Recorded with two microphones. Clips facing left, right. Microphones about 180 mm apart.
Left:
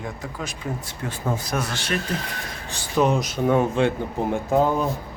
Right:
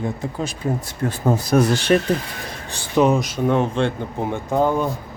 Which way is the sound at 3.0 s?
Centre (ahead or behind).